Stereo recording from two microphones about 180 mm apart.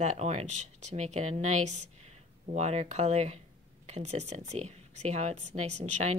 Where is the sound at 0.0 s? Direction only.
40° right (ahead or behind).